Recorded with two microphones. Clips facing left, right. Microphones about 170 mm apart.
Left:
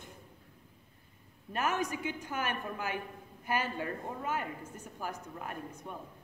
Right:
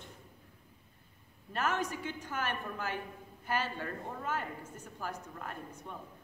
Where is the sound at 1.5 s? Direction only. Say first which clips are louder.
Left 1 dB; 15° left (ahead or behind).